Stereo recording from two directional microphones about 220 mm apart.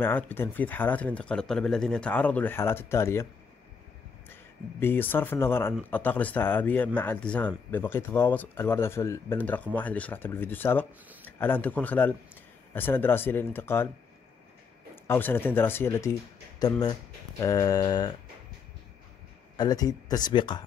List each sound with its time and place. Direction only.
0.0 s speech: 10° left (ahead or behind)
4.3 s speech: 10° left (ahead or behind)
15.0 s speech: 10° left (ahead or behind)
19.5 s speech: 20° left (ahead or behind)